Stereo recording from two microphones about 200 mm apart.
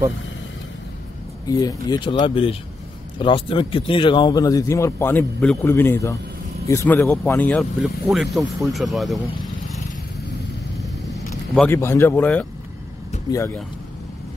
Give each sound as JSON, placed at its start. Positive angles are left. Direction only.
{"t": 1.5, "sound": "speech", "side_deg": 20}
{"t": 11.5, "sound": "speech", "side_deg": 10}